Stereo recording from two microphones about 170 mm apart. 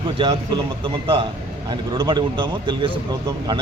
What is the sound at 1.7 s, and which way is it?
Speech, 25° right (ahead or behind).